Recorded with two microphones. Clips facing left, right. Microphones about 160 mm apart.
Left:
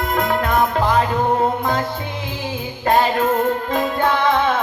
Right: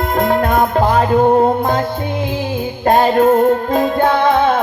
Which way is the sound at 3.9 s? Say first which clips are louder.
Right 3 dB; 50° right (ahead or behind).